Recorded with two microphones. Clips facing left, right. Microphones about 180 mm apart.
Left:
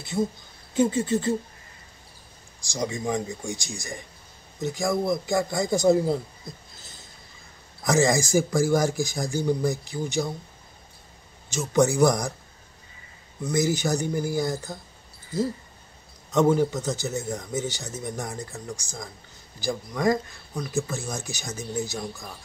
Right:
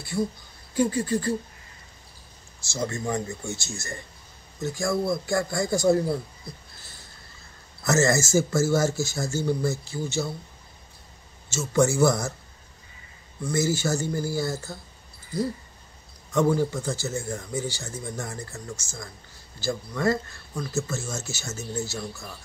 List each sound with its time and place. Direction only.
0.0 s a man's voice: 20° left (ahead or behind)
2.6 s a man's voice: 15° left (ahead or behind)
6.0 s a sound: 20° left (ahead or behind)
7.8 s speech: 15° left (ahead or behind)
11.5 s speech: 15° left (ahead or behind)
13.4 s speech: 20° left (ahead or behind)
16.3 s a man's voice: 20° left (ahead or behind)